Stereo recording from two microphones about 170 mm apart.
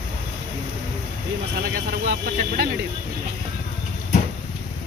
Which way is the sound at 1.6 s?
60° right (ahead or behind).